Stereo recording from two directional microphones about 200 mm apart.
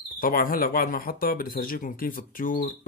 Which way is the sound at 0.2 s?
45° left (ahead or behind).